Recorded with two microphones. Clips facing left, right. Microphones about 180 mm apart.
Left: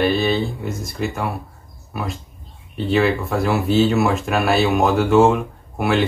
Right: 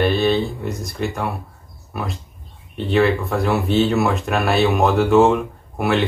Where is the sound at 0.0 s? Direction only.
Centre (ahead or behind).